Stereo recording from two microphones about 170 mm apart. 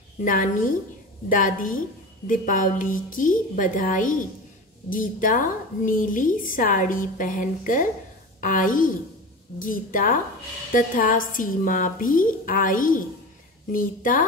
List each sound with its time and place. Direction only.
0.2 s a woman's voice: 50° left (ahead or behind)